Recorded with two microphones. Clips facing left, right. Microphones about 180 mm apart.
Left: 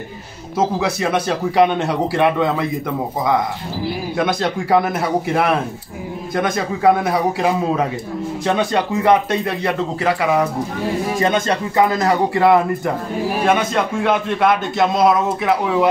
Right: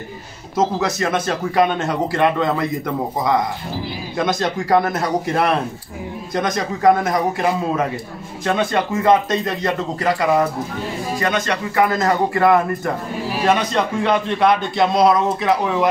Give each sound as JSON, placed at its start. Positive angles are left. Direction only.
{"t": 0.6, "sound": "a man's voice", "side_deg": 10}
{"t": 4.2, "sound": "a man's voice", "side_deg": 5}
{"t": 11.1, "sound": "a man's voice", "side_deg": 25}
{"t": 11.9, "sound": "a man's voice", "side_deg": 15}